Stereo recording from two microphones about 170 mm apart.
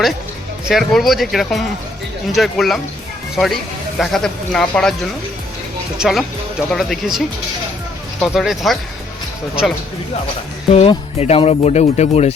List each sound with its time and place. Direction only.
0.7 s speech: centre (ahead or behind)
6.0 s speech: centre (ahead or behind)
10.7 s speech: 35° left (ahead or behind)